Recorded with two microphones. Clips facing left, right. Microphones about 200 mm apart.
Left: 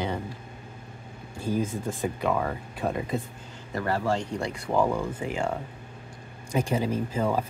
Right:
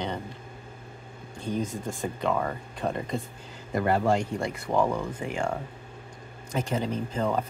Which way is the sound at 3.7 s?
20° right (ahead or behind).